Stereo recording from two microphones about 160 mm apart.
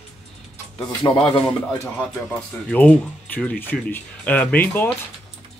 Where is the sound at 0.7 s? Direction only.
35° left (ahead or behind).